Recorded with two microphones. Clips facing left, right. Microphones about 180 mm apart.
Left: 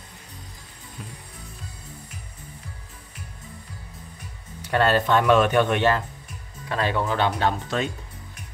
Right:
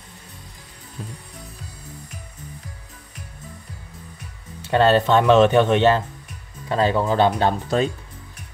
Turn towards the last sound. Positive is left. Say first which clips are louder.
# right 4 dB
turn(degrees=-35)  # may be behind; listen again after turning